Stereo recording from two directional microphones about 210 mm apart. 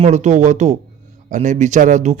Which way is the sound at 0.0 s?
35° right (ahead or behind).